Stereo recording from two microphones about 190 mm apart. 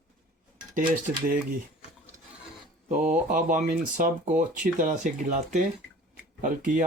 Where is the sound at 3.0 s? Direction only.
40° right (ahead or behind).